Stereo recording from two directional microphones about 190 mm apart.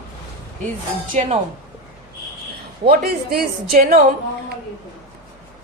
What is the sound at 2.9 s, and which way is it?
A woman's voice, 50° right (ahead or behind).